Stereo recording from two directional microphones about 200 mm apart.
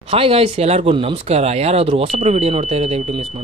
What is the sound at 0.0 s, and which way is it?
Speech, 30° right (ahead or behind).